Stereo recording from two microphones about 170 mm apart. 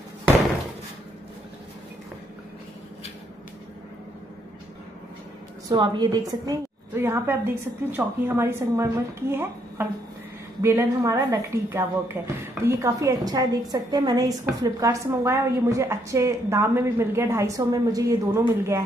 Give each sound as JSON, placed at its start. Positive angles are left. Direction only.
{"t": 5.7, "sound": "a woman's voice", "side_deg": -25}